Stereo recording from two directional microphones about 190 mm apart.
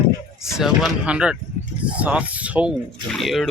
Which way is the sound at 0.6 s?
5° right (ahead or behind).